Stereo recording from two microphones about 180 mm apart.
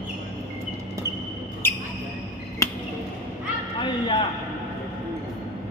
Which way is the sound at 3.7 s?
25° left (ahead or behind).